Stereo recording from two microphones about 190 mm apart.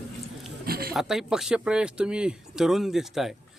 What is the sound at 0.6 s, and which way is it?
Speech, 55° right (ahead or behind).